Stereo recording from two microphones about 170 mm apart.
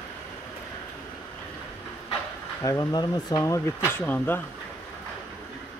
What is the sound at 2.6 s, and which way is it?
Speech, 20° left (ahead or behind).